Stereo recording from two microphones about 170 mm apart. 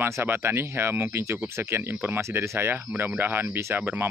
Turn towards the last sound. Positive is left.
turn(degrees=-10)  # may be behind; listen again after turning